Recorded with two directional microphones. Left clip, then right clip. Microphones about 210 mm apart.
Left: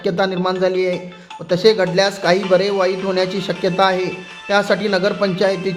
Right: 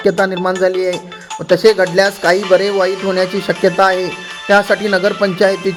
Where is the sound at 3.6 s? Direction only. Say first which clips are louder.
Right 4 dB; 30° right (ahead or behind).